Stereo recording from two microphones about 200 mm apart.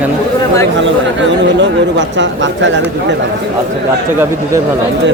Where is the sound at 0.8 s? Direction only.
65° right (ahead or behind).